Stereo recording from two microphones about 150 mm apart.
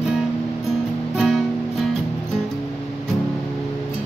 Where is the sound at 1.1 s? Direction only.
Centre (ahead or behind).